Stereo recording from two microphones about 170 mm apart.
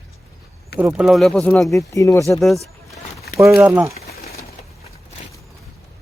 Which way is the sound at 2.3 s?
Centre (ahead or behind).